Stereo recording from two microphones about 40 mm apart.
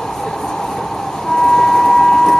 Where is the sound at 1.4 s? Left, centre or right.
Centre.